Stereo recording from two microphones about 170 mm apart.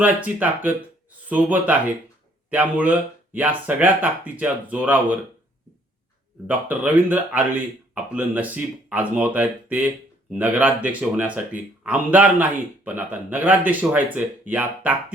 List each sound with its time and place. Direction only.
0.0 s speech: 10° right (ahead or behind)
6.5 s speech: 10° right (ahead or behind)